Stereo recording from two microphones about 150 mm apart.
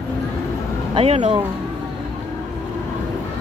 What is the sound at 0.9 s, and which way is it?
Speech, 40° right (ahead or behind).